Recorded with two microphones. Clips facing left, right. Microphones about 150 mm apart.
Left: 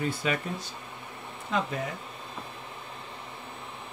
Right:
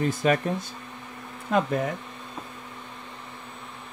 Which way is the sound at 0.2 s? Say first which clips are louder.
Right 7 dB; 45° right (ahead or behind).